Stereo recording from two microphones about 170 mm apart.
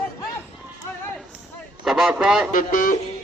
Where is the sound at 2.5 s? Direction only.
50° left (ahead or behind).